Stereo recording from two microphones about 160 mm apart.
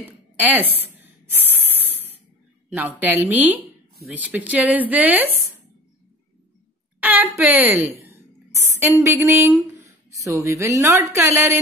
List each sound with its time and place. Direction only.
0.0 s spray: 10° right (ahead or behind)
2.7 s a woman's voice: 10° right (ahead or behind)
7.0 s a sound: 10° right (ahead or behind)
7.3 s a woman's voice: 10° right (ahead or behind)